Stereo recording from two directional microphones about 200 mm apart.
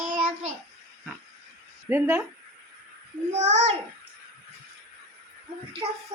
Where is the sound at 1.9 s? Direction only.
10° right (ahead or behind).